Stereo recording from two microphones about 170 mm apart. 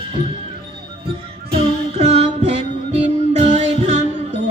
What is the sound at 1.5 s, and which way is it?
Music, 40° right (ahead or behind).